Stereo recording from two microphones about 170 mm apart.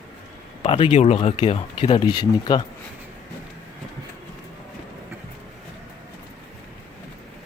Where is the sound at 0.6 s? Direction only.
35° left (ahead or behind).